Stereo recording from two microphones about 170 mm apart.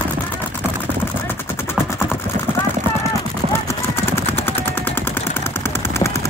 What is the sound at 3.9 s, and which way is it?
Vehicle, 15° left (ahead or behind).